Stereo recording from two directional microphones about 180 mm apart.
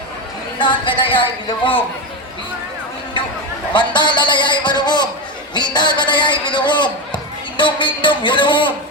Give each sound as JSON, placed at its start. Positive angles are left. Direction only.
{"t": 0.6, "sound": "a man's voice", "side_deg": 25}
{"t": 3.2, "sound": "a sound", "side_deg": 25}
{"t": 3.7, "sound": "a man's voice", "side_deg": 25}